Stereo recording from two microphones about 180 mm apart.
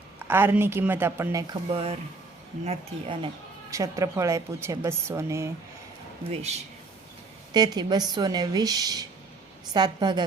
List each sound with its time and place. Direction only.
0.3 s a woman's voice: 10° right (ahead or behind)
1.7 s a woman's voice: 35° right (ahead or behind)
3.7 s a woman's voice: 15° right (ahead or behind)
7.5 s a woman's voice: 25° right (ahead or behind)